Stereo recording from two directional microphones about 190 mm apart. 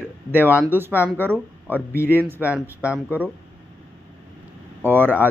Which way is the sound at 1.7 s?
10° left (ahead or behind).